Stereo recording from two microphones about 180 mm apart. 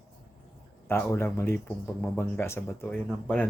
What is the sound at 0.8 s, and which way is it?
Speech, 15° left (ahead or behind).